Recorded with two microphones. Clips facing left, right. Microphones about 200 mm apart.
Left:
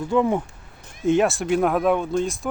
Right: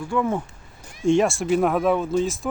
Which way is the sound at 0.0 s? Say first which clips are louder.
Left 3 dB; 20° left (ahead or behind).